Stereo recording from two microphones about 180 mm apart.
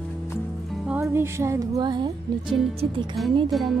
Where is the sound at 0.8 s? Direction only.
10° right (ahead or behind); by 3.2 s 25° right (ahead or behind).